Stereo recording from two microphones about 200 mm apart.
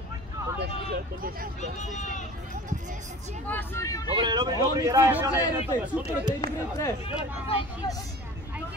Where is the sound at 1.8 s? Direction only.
35° left (ahead or behind).